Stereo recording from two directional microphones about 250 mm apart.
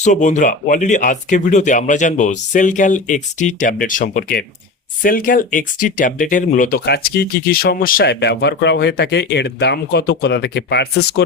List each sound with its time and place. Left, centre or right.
0.0 s speech: left